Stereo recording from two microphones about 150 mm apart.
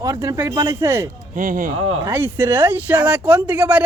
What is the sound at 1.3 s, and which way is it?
Speech, 60° right (ahead or behind).